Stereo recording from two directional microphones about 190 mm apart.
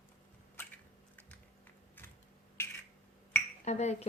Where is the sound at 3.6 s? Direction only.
35° left (ahead or behind).